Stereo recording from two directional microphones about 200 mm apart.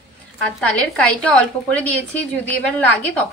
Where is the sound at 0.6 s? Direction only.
5° left (ahead or behind).